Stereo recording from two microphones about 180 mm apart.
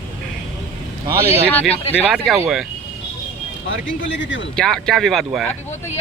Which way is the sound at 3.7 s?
90° left.